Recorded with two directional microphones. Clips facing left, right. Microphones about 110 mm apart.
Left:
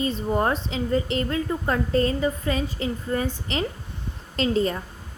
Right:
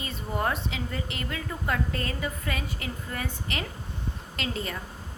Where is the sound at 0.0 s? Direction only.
30° left (ahead or behind).